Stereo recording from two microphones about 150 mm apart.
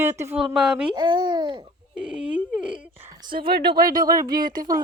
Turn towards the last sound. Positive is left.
turn(degrees=-25)  # may be behind; listen again after turning